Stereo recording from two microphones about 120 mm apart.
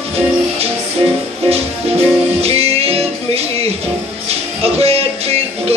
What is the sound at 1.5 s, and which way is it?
Music, 55° right (ahead or behind).